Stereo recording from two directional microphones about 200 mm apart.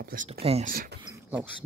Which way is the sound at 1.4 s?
65° right (ahead or behind).